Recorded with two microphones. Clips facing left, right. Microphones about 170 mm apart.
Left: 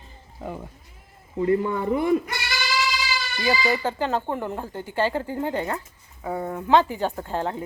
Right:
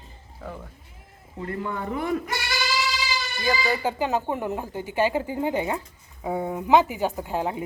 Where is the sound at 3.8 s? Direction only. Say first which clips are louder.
Even; 10° right (ahead or behind).